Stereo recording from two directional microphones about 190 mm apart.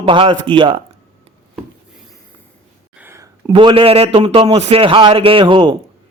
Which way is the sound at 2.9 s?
10° right (ahead or behind).